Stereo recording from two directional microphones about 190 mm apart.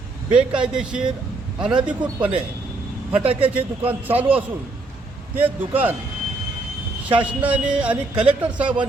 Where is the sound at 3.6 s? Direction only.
10° right (ahead or behind).